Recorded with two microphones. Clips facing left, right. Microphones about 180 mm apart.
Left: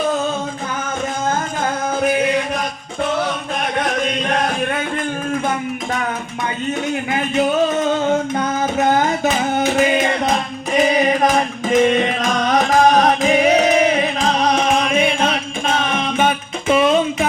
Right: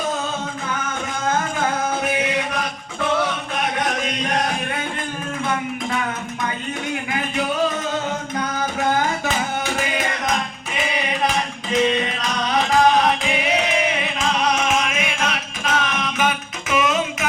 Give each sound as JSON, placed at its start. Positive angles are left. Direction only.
{"t": 10.8, "sound": "music", "side_deg": 40}